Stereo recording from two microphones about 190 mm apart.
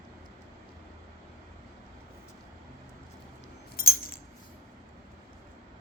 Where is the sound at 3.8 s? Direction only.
50° left (ahead or behind).